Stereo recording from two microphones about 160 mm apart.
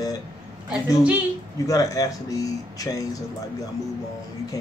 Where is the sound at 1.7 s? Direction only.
20° left (ahead or behind).